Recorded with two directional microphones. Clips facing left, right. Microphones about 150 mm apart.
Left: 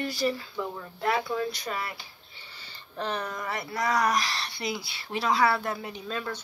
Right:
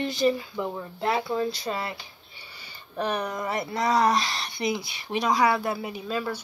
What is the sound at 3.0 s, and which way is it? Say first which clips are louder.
Speech: right 4 dB; 15° right (ahead or behind).